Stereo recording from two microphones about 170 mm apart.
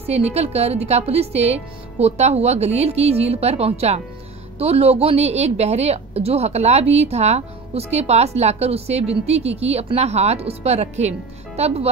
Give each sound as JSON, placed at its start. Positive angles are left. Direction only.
{"t": 0.0, "sound": "a woman's voice", "side_deg": -40}